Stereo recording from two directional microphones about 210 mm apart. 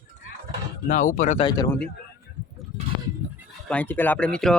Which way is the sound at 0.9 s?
40° left (ahead or behind).